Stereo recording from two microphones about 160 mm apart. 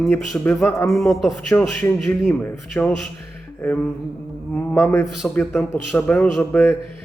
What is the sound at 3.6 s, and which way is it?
A man's voice, 5° left (ahead or behind).